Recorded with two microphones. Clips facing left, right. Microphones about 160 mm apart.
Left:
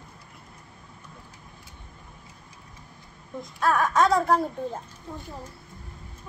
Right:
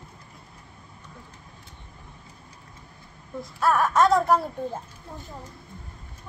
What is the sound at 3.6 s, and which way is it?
Speech, centre (ahead or behind).